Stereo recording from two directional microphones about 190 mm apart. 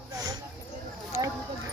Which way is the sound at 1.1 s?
15° right (ahead or behind).